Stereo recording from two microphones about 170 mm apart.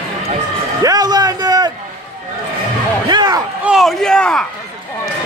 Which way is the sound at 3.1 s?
25° right (ahead or behind).